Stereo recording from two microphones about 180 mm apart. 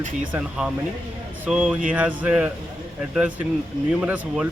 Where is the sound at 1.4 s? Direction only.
5° right (ahead or behind).